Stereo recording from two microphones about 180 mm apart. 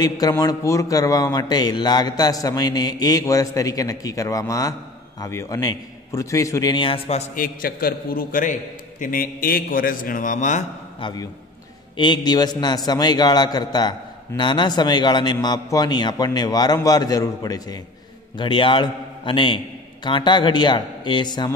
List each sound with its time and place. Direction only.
0.0 s a man's voice: 20° left (ahead or behind)
7.3 s a man's voice: 50° left (ahead or behind)
11.0 s a man's voice: 25° left (ahead or behind)